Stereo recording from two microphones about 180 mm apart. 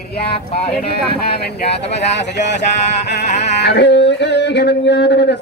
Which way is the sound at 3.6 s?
70° left (ahead or behind).